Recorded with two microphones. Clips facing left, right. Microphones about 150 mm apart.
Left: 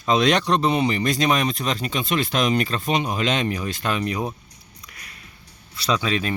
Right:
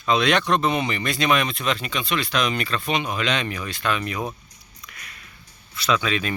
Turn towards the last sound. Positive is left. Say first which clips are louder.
# even
turn(degrees=35)  # may be behind; listen again after turning